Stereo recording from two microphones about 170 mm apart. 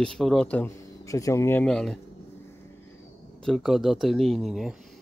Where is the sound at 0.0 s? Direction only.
5° left (ahead or behind).